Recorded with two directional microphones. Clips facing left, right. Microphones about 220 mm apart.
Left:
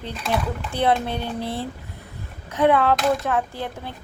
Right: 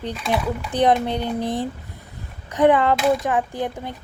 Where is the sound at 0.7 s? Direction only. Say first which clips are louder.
Right 3 dB; 15° right (ahead or behind).